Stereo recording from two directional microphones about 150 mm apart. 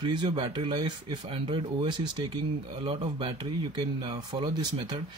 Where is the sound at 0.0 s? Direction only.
30° right (ahead or behind).